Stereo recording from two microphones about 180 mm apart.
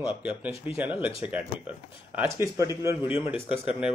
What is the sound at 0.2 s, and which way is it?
A man's voice, 5° right (ahead or behind).